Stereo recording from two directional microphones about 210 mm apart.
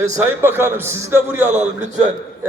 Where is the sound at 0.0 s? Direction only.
10° right (ahead or behind).